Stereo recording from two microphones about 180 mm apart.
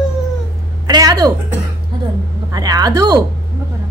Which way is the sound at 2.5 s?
20° right (ahead or behind).